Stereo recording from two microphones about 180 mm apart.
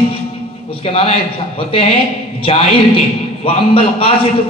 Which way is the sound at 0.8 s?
30° left (ahead or behind).